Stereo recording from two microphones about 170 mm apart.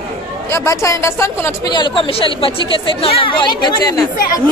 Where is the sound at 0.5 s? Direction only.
15° left (ahead or behind).